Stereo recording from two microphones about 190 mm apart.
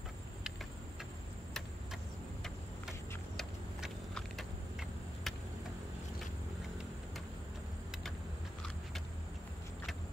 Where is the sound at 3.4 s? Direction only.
Centre (ahead or behind).